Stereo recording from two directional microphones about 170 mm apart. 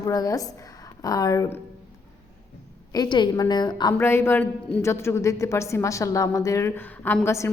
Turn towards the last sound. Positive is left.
turn(degrees=15)  # may be behind; listen again after turning